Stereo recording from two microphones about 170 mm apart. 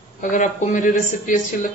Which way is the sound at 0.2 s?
50° left (ahead or behind).